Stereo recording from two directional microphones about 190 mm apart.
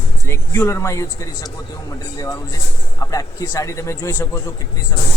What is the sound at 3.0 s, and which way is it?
Speech, 15° left (ahead or behind).